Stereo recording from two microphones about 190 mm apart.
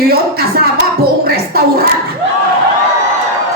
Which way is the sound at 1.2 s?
55° right (ahead or behind).